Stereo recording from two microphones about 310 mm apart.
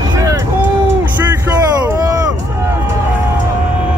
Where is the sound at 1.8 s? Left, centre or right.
Centre.